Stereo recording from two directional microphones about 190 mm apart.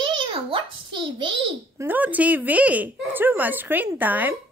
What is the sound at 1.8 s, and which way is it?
Speech, 10° right (ahead or behind).